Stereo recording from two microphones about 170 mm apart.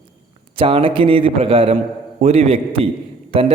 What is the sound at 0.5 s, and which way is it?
A man's voice, 30° right (ahead or behind).